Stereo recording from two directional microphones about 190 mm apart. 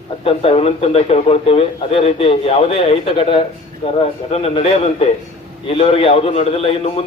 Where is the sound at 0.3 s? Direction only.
30° left (ahead or behind).